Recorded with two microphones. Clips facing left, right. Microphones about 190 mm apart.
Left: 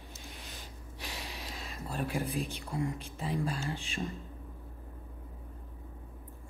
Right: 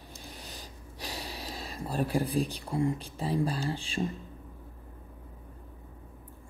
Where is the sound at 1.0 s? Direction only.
35° right (ahead or behind).